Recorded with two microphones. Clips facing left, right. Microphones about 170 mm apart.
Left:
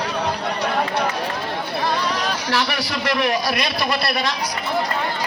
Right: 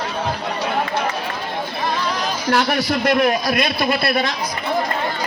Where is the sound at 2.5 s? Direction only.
50° right (ahead or behind).